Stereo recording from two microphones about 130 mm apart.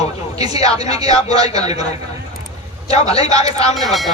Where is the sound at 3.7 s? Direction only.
Centre (ahead or behind).